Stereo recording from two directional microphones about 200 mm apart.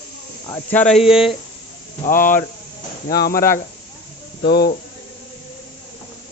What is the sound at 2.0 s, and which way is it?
Speech, 40° left (ahead or behind).